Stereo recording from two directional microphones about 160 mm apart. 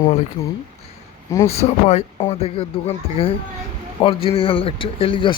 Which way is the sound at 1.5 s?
40° left (ahead or behind).